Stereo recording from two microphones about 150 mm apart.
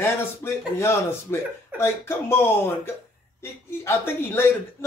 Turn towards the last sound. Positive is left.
turn(degrees=15)  # may be behind; listen again after turning